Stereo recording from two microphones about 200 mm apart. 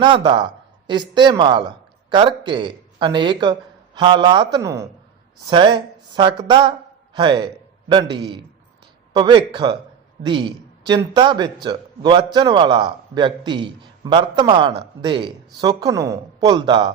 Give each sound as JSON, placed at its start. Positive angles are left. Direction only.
{"t": 0.3, "sound": "a man's voice", "side_deg": -25}